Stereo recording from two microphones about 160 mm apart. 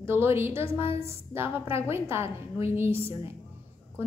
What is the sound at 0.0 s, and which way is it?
A woman's voice, 15° right (ahead or behind).